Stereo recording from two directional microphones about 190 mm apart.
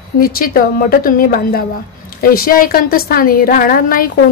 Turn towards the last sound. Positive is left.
turn(degrees=50)  # may be behind; listen again after turning